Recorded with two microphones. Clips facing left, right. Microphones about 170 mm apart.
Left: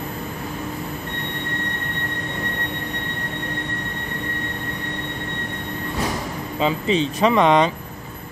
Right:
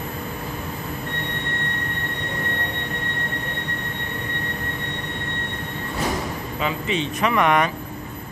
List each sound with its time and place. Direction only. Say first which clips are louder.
6.6 s speech: left 5 dB; 30° left (ahead or behind)